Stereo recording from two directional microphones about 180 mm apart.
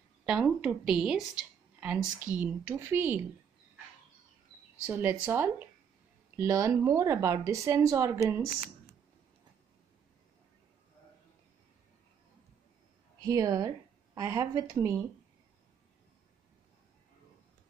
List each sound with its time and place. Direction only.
0.2 s speech: 5° right (ahead or behind)
4.8 s speech: 10° right (ahead or behind)
13.2 s speech: 20° right (ahead or behind)